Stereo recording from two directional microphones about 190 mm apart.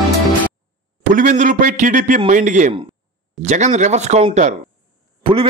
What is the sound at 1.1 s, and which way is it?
A man's voice, 40° right (ahead or behind).